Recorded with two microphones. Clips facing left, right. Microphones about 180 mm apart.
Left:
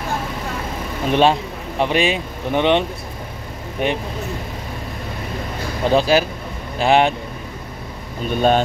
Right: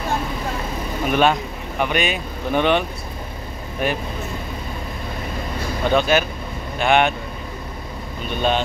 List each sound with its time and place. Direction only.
1.0 s speech: 30° left (ahead or behind)
3.8 s speech: 25° left (ahead or behind)
5.9 s a man's voice: 30° left (ahead or behind)
8.4 s speech: 45° left (ahead or behind)